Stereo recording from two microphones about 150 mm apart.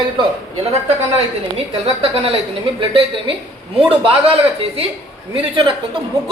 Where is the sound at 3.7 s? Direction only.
35° right (ahead or behind).